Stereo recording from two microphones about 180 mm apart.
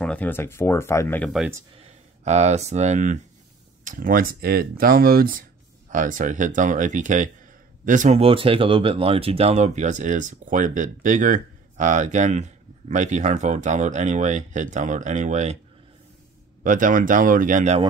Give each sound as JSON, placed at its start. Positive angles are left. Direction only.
{"t": 0.0, "sound": "speech", "side_deg": 10}
{"t": 1.8, "sound": "speech", "side_deg": -40}
{"t": 16.6, "sound": "speech", "side_deg": -45}